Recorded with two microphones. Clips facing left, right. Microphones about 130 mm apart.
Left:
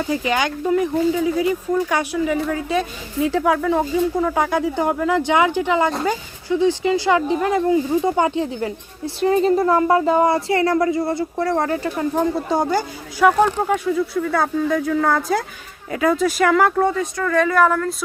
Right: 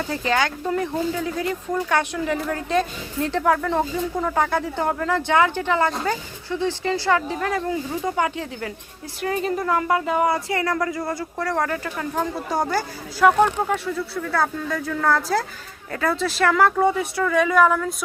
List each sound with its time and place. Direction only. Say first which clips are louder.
0.1 s speech: even; 15° left (ahead or behind)
12.6 s speech: left 4 dB; 15° left (ahead or behind)
16.9 s speech: left 1 dB; 10° right (ahead or behind)